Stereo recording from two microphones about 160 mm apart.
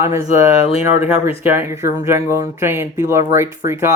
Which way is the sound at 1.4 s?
15° right (ahead or behind).